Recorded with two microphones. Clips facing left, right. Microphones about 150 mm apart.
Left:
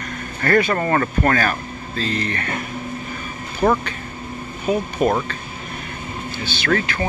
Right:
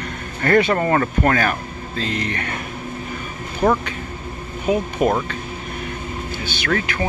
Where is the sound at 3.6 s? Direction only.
20° right (ahead or behind).